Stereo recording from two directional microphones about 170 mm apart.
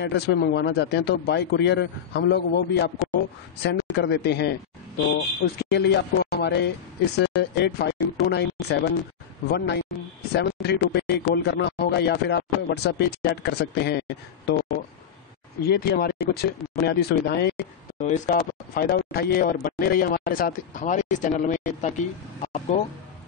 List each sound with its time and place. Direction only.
0.0 s speech: 80° left
3.6 s a man's voice: 90° left; by 14.6 s 75° left (ahead or behind)
15.6 s a man's voice: 70° left (ahead or behind)
17.9 s speech: 45° left (ahead or behind)